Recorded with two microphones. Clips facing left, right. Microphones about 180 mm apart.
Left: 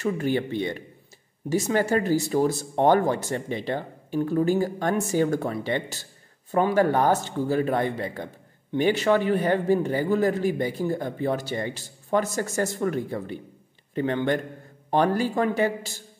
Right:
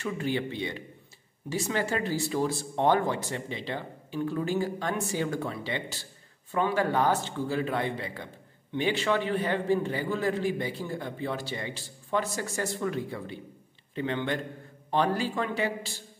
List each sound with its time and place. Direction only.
0.0 s a man's voice: 45° left (ahead or behind)